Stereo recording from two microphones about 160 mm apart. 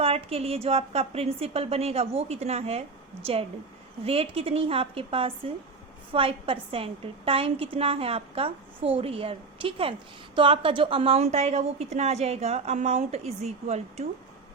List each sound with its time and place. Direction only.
0.0 s a woman's voice: 40° right (ahead or behind)
4.0 s a woman's voice: 35° right (ahead or behind)